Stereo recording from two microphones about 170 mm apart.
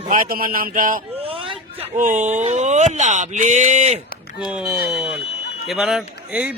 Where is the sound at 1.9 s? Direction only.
50° right (ahead or behind).